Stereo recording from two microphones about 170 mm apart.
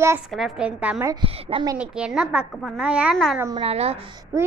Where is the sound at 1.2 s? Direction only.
30° right (ahead or behind).